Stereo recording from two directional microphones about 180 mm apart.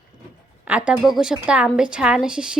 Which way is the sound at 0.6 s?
5° right (ahead or behind).